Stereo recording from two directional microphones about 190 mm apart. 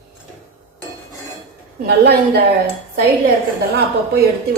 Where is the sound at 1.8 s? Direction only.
55° right (ahead or behind).